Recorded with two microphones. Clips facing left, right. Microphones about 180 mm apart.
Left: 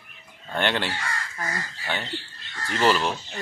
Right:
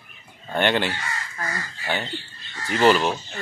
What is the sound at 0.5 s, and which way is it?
Speech, centre (ahead or behind).